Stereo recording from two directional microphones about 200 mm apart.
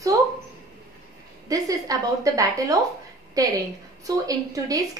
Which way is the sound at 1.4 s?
15° right (ahead or behind).